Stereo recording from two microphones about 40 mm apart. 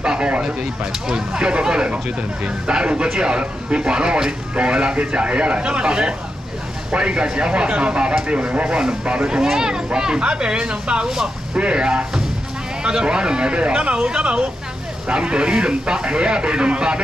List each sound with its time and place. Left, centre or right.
0.0 s a sound: right
1.0 s speech: centre; by 8.6 s right
8.6 s speech: right